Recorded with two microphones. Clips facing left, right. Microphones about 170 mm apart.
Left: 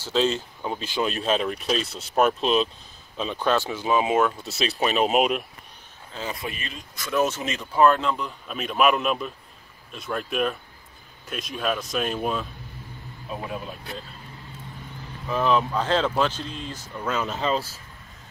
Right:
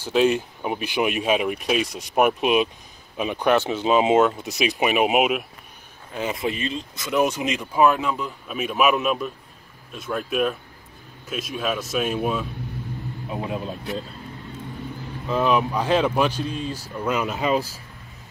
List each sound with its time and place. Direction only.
0.0 s speech: 15° right (ahead or behind)
6.1 s speech: 20° right (ahead or behind); by 12.4 s 5° right (ahead or behind)
13.3 s speech: 20° right (ahead or behind)
15.2 s speech: 15° right (ahead or behind)